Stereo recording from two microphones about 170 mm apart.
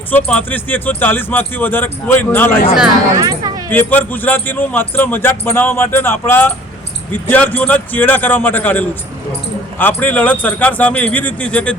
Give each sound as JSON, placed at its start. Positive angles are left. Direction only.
{"t": 0.1, "sound": "a man's voice", "side_deg": 10}
{"t": 3.2, "sound": "speech", "side_deg": -25}
{"t": 3.7, "sound": "a man's voice", "side_deg": 10}